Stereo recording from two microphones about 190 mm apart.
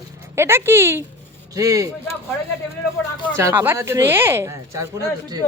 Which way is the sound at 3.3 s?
10° right (ahead or behind).